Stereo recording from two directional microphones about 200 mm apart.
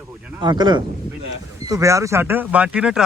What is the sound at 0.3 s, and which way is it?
Speech, 20° right (ahead or behind).